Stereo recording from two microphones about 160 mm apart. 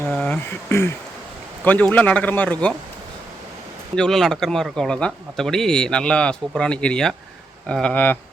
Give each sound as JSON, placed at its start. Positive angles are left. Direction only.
{"t": 0.1, "sound": "a sound", "side_deg": 5}
{"t": 0.7, "sound": "speech", "side_deg": 15}
{"t": 3.9, "sound": "speech", "side_deg": 5}